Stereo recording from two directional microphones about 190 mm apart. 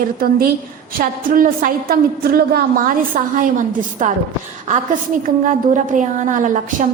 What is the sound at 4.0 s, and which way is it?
Speech, 40° right (ahead or behind).